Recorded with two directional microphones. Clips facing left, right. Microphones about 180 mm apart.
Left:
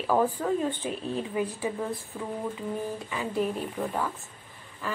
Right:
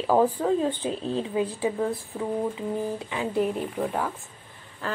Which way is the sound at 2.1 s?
15° right (ahead or behind).